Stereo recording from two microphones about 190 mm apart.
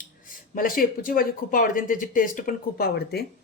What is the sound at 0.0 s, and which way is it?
Speech, 45° left (ahead or behind).